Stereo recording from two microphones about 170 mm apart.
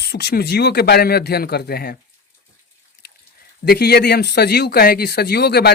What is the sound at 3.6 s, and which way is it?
Speech, 70° left (ahead or behind).